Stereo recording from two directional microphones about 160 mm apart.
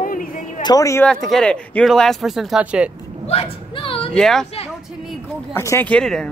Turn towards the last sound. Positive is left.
turn(degrees=5)  # may be behind; listen again after turning